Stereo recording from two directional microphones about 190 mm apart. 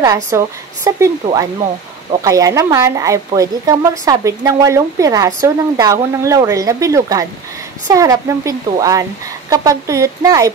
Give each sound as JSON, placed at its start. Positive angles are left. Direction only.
{"t": 0.0, "sound": "speech", "side_deg": -20}